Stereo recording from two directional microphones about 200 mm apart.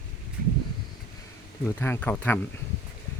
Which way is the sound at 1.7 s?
10° left (ahead or behind).